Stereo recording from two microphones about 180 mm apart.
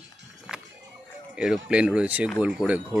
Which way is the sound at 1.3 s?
5° right (ahead or behind).